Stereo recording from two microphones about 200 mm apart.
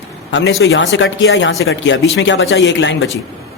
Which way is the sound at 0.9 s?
70° left (ahead or behind).